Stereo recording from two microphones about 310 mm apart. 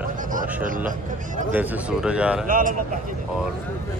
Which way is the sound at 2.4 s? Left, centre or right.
Right.